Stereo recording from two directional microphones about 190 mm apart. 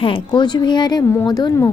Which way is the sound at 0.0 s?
25° left (ahead or behind).